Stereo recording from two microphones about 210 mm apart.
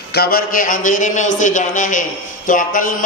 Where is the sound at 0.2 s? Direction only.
45° left (ahead or behind).